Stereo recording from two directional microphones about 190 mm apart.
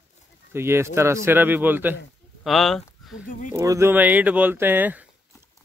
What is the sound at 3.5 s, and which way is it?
Speech, 15° right (ahead or behind).